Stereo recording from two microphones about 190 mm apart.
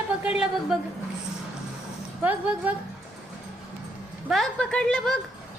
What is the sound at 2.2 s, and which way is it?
Speech, 10° right (ahead or behind).